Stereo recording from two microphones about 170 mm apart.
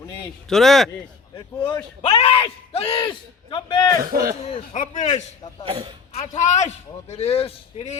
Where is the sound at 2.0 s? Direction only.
35° left (ahead or behind).